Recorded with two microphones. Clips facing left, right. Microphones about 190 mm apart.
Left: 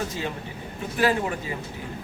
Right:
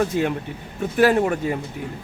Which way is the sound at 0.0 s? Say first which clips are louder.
Right 9 dB; 60° right (ahead or behind).